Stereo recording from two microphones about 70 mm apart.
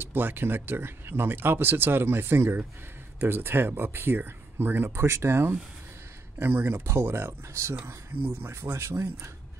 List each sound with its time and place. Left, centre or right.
0.0 s speech: right